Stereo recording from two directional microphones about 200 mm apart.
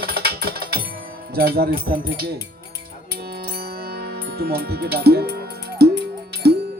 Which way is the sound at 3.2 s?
50° right (ahead or behind).